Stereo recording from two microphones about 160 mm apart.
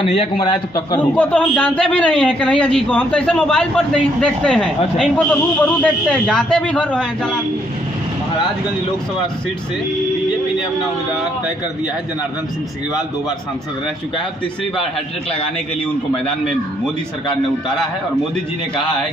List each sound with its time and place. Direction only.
0.0 s a man's voice: 35° left (ahead or behind)
1.1 s a man's voice: 10° left (ahead or behind)